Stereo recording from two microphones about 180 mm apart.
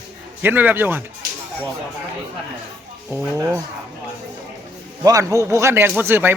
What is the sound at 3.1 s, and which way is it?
Speech, 15° right (ahead or behind).